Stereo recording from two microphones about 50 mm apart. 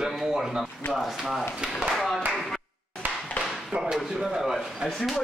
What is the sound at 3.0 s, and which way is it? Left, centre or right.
Tap, right.